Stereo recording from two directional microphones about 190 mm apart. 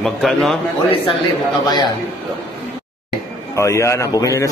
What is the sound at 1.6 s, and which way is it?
Speech, 20° left (ahead or behind).